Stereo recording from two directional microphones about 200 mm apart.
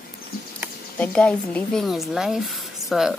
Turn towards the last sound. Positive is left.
turn(degrees=0)  # may be behind; listen again after turning